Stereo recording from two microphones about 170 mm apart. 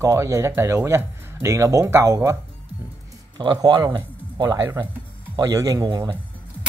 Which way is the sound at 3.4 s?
25° right (ahead or behind).